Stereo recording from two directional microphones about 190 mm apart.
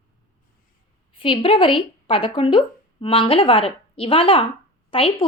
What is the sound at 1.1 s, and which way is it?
A woman's voice, 30° left (ahead or behind).